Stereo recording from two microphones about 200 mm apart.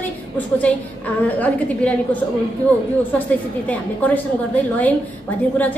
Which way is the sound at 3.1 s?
10° left (ahead or behind).